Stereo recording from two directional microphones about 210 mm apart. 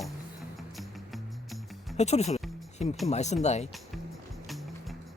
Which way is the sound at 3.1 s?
30° left (ahead or behind).